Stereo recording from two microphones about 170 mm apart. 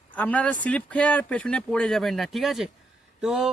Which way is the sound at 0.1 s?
10° left (ahead or behind).